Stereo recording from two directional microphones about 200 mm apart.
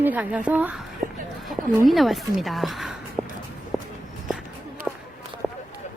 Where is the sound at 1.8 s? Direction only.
Centre (ahead or behind).